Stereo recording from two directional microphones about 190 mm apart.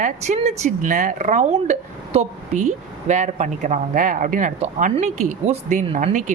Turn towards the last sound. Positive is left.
turn(degrees=-40)  # may be behind; listen again after turning